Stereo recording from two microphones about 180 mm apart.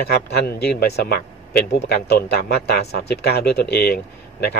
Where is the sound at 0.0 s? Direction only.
65° left (ahead or behind).